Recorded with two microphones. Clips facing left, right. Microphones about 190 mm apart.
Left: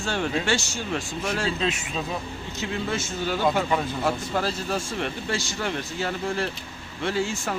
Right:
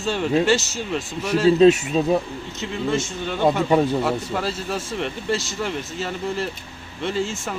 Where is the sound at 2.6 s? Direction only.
Centre (ahead or behind).